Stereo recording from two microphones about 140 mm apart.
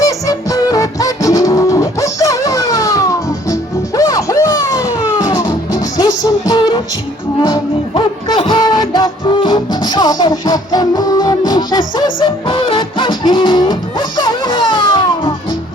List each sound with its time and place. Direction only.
0.0 s music: 25° left (ahead or behind)